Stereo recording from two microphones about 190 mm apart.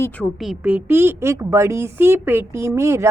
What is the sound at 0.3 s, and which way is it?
Speech, 5° right (ahead or behind).